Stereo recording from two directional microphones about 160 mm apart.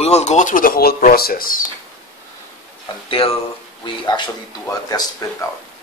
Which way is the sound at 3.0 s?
35° left (ahead or behind).